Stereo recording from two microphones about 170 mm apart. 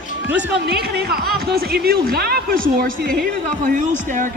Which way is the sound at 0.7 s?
70° right (ahead or behind).